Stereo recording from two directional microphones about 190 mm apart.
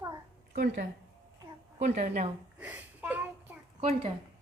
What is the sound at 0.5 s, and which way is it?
A woman's voice, 45° right (ahead or behind).